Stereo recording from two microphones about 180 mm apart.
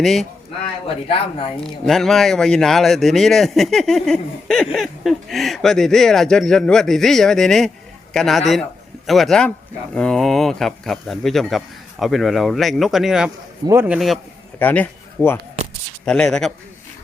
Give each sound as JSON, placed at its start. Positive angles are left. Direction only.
{"t": 0.0, "sound": "speech", "side_deg": 0}
{"t": 0.9, "sound": "speech", "side_deg": 30}
{"t": 1.6, "sound": "speech", "side_deg": 0}
{"t": 14.6, "sound": "speech", "side_deg": 10}